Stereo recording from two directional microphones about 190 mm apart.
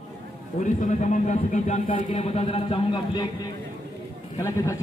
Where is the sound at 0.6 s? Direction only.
40° left (ahead or behind).